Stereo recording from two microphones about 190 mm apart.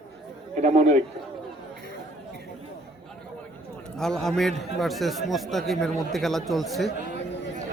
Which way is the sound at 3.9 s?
5° left (ahead or behind).